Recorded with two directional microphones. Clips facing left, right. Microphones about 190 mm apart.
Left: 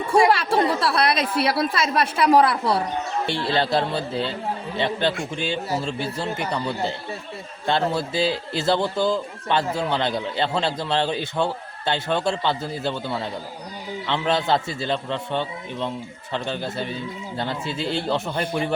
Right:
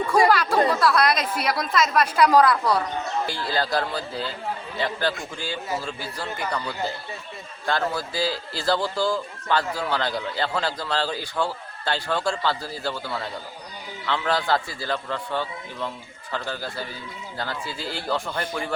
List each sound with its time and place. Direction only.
0.1 s a woman's voice: 25° left (ahead or behind)